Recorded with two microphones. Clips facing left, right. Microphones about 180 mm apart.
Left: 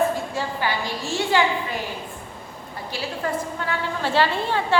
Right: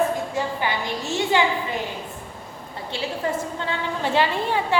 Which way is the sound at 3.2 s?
20° right (ahead or behind).